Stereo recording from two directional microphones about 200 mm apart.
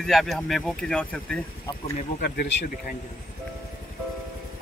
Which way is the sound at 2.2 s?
55° left (ahead or behind).